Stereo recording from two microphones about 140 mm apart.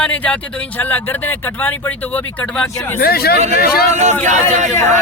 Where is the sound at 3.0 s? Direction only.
90° left.